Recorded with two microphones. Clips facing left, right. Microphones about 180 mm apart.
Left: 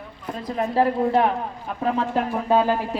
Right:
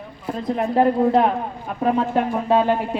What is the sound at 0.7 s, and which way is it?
Speech, 25° right (ahead or behind).